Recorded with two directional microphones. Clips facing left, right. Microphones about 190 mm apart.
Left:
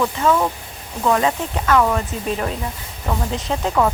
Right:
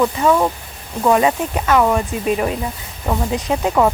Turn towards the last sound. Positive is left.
turn(degrees=-15)  # may be behind; listen again after turning